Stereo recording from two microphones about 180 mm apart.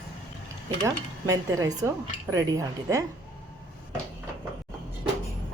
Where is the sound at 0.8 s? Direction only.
20° right (ahead or behind).